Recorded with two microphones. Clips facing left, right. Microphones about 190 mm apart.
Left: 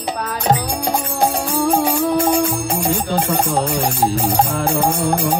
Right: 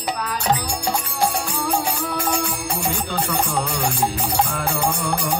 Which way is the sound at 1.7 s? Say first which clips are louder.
Left 7 dB; 50° left (ahead or behind).